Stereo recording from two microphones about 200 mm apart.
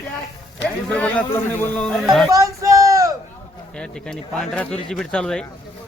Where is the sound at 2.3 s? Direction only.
15° right (ahead or behind).